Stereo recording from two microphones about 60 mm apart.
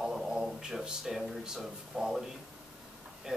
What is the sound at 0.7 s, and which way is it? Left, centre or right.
A man's voice, centre.